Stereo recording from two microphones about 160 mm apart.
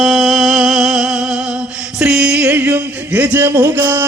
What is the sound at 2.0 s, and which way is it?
Speech, 5° right (ahead or behind).